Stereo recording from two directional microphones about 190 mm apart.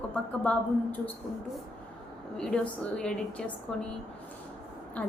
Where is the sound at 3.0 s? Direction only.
5° left (ahead or behind).